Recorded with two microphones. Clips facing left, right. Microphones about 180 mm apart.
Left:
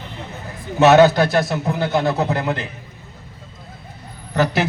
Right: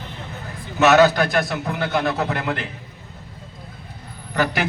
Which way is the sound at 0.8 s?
30° left (ahead or behind).